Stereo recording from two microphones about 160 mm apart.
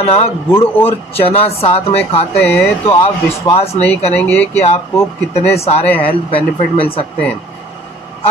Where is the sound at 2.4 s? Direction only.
15° left (ahead or behind).